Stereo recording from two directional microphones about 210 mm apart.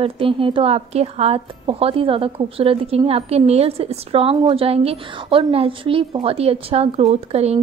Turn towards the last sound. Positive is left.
turn(degrees=-30)  # may be behind; listen again after turning